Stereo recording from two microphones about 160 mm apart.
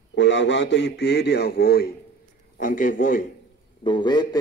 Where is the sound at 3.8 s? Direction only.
30° left (ahead or behind).